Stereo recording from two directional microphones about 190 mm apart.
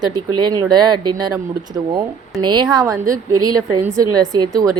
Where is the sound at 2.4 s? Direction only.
25° right (ahead or behind).